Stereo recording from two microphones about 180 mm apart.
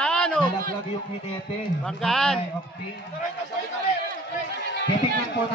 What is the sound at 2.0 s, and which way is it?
Speech, centre (ahead or behind).